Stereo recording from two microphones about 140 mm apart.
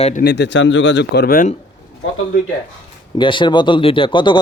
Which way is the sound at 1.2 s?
90° left.